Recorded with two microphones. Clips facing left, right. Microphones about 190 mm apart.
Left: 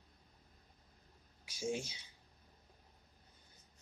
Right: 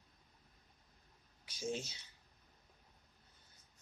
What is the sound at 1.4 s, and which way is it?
Speech, 10° left (ahead or behind).